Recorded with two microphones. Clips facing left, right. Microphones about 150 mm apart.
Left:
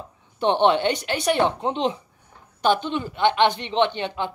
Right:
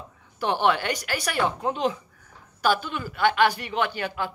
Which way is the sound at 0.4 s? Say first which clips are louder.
Left 5 dB; 25° left (ahead or behind).